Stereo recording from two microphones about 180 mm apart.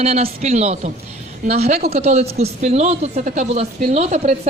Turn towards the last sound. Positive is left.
turn(degrees=-40)  # may be behind; listen again after turning